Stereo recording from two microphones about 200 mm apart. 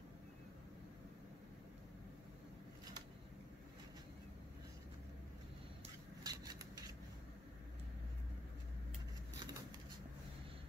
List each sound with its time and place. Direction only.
6.2 s scissors: 20° right (ahead or behind)